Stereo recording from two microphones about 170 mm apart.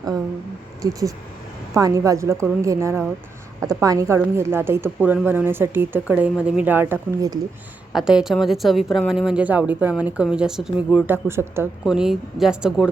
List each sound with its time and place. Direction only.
0.8 s a woman's voice: 20° right (ahead or behind)
7.9 s speech: 5° right (ahead or behind)
11.9 s speech: 5° right (ahead or behind)